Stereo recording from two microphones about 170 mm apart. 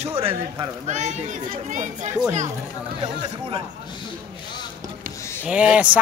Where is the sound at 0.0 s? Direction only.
35° right (ahead or behind).